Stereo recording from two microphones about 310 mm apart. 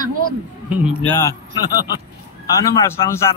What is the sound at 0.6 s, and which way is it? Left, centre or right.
Speech, centre.